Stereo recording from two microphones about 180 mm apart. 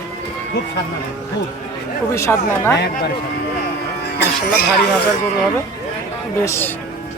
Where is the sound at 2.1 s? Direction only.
15° left (ahead or behind).